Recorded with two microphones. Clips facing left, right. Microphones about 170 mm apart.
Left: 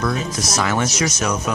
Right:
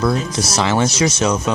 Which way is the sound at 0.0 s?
30° right (ahead or behind).